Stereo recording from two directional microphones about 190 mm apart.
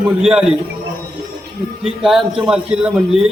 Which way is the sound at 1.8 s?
Centre (ahead or behind).